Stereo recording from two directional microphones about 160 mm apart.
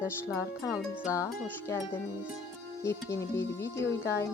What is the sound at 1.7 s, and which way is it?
Speech, 15° left (ahead or behind).